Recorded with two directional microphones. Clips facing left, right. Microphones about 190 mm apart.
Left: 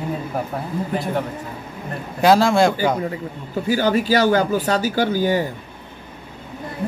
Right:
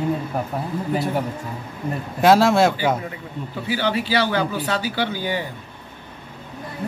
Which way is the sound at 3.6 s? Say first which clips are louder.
Left 5 dB; 45° left (ahead or behind).